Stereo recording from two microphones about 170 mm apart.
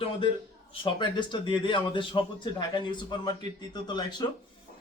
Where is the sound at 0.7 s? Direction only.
30° left (ahead or behind).